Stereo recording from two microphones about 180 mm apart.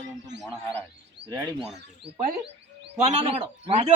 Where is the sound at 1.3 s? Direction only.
15° right (ahead or behind).